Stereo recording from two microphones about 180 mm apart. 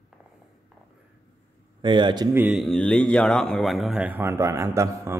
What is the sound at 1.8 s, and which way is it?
Speech, 25° right (ahead or behind).